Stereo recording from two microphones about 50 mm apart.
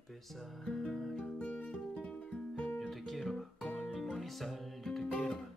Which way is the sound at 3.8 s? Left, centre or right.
Centre.